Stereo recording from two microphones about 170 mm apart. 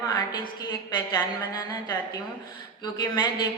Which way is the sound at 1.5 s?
25° left (ahead or behind).